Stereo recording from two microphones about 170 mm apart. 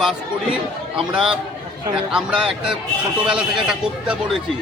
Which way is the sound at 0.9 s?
30° right (ahead or behind).